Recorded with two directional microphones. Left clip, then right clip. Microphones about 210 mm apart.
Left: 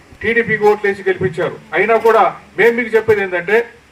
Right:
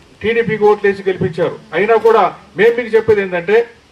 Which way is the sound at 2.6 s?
50° left (ahead or behind).